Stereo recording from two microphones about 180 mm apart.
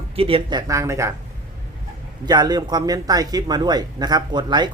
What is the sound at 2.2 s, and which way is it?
Speech, 20° right (ahead or behind).